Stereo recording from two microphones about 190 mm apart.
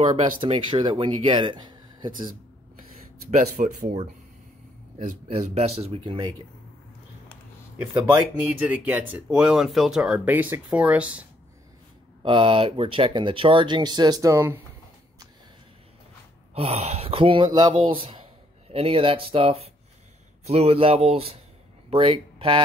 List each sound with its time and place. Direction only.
0.0 s speech: 35° right (ahead or behind)
3.3 s speech: 40° right (ahead or behind)
7.8 s speech: 10° right (ahead or behind)
12.2 s speech: 25° right (ahead or behind)
16.5 s speech: 35° right (ahead or behind)